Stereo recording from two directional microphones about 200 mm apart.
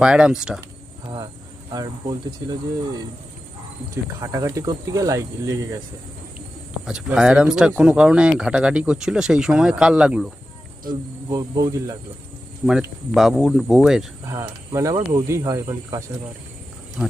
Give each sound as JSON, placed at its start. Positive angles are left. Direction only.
{"t": 0.0, "sound": "speech", "side_deg": -5}
{"t": 1.0, "sound": "vehicle", "side_deg": -20}
{"t": 1.7, "sound": "speech", "side_deg": -20}
{"t": 4.2, "sound": "speech", "side_deg": -15}
{"t": 6.8, "sound": "speech", "side_deg": -5}
{"t": 11.3, "sound": "speech", "side_deg": -20}
{"t": 12.6, "sound": "speech", "side_deg": 0}
{"t": 14.3, "sound": "speech", "side_deg": -15}